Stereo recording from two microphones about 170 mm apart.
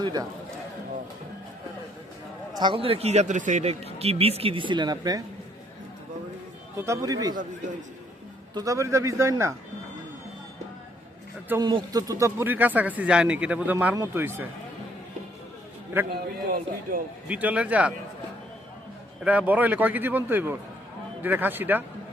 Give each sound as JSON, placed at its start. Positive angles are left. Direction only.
{"t": 0.0, "sound": "a man's voice", "side_deg": -25}
{"t": 2.6, "sound": "speech", "side_deg": -30}
{"t": 6.7, "sound": "a man's voice", "side_deg": -20}
{"t": 8.5, "sound": "speech", "side_deg": -20}
{"t": 11.6, "sound": "speech", "side_deg": -25}
{"t": 16.1, "sound": "speech", "side_deg": -55}
{"t": 17.2, "sound": "speech", "side_deg": -10}
{"t": 19.2, "sound": "speech", "side_deg": -10}